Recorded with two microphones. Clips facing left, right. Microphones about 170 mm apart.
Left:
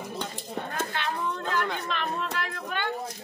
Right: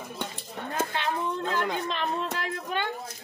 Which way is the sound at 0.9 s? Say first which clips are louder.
Right 2 dB; 30° right (ahead or behind).